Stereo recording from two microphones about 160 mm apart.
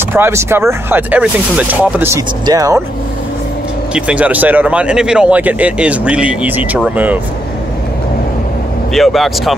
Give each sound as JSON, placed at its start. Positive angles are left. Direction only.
{"t": 0.1, "sound": "speech", "side_deg": -15}
{"t": 3.9, "sound": "speech", "side_deg": -10}
{"t": 8.9, "sound": "speech", "side_deg": 0}